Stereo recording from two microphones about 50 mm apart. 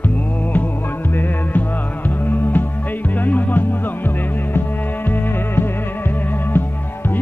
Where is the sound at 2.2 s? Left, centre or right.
Left.